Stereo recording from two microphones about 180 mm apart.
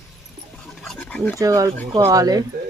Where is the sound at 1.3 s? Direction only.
20° right (ahead or behind).